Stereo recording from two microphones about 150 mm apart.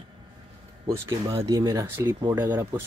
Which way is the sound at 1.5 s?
25° right (ahead or behind).